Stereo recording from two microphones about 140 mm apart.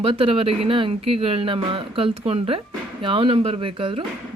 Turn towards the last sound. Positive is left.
turn(degrees=-40)  # may be behind; listen again after turning